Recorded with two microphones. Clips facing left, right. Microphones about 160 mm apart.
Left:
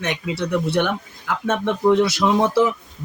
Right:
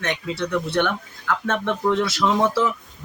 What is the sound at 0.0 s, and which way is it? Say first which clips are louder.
Speech: left 1 dB; 10° left (ahead or behind).